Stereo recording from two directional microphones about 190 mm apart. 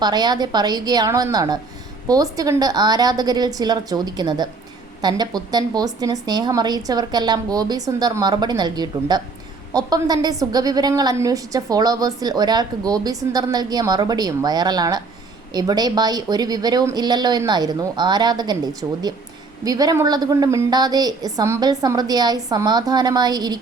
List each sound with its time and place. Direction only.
0.0 s a woman's voice: 20° right (ahead or behind)